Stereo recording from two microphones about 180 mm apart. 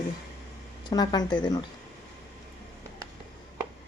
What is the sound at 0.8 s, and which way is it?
Speech, 25° left (ahead or behind).